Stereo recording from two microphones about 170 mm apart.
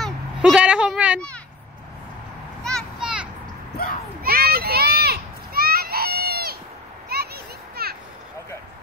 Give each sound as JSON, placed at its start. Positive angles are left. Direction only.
{"t": 0.0, "sound": "speech", "side_deg": -5}
{"t": 2.6, "sound": "children playing", "side_deg": 0}
{"t": 4.2, "sound": "children playing", "side_deg": -60}
{"t": 7.1, "sound": "a sound", "side_deg": -65}